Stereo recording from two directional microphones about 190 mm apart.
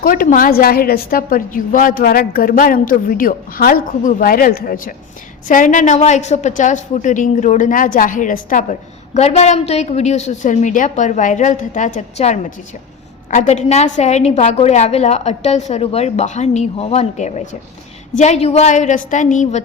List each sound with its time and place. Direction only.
0.0 s a woman's voice: 50° left (ahead or behind)